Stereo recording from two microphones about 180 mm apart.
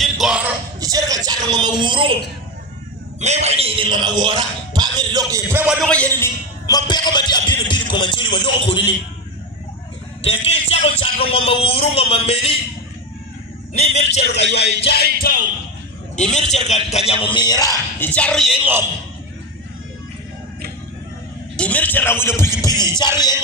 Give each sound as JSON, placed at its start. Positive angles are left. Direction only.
{"t": 0.0, "sound": "a sound", "side_deg": -5}
{"t": 0.7, "sound": "a sound", "side_deg": -20}
{"t": 3.2, "sound": "speech", "side_deg": -40}
{"t": 5.8, "sound": "a man's voice", "side_deg": 5}
{"t": 10.4, "sound": "a man's voice", "side_deg": 35}
{"t": 14.2, "sound": "a man's voice", "side_deg": 70}
{"t": 14.8, "sound": "music", "side_deg": 60}
{"t": 16.2, "sound": "a man's voice", "side_deg": 40}
{"t": 21.5, "sound": "a man's voice", "side_deg": 10}